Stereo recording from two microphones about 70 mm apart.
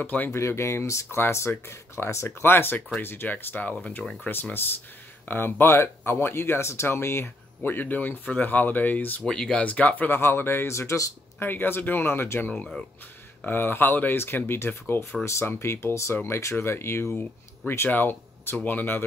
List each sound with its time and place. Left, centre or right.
0.0 s speech: left
0.3 s speech: left
9.2 s speech: centre
9.6 s speech: left
10.1 s speech: left
11.4 s speech: left
13.5 s speech: left